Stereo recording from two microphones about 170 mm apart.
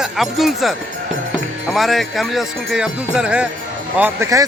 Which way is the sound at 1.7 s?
Centre (ahead or behind).